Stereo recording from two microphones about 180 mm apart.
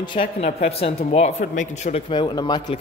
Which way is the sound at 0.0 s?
30° left (ahead or behind).